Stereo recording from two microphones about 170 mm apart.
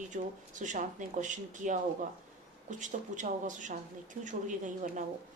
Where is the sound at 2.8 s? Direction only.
45° right (ahead or behind).